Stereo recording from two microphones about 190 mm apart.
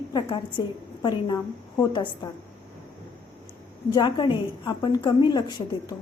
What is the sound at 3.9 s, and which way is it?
A woman's voice, 25° left (ahead or behind).